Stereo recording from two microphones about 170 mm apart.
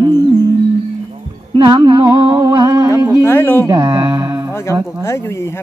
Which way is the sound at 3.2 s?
10° left (ahead or behind).